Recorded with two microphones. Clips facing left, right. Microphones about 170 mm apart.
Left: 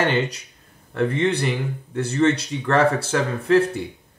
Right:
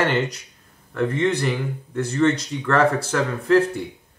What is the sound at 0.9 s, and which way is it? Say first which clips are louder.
Speech: even; 20° left (ahead or behind).